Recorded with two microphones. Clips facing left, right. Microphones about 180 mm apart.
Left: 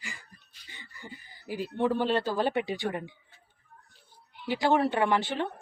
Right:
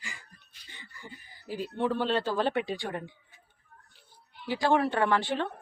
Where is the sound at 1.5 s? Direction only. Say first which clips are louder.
Left 2 dB; 15° left (ahead or behind).